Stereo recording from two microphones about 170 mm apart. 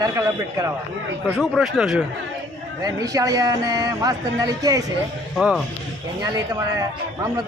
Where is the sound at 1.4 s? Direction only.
Centre (ahead or behind).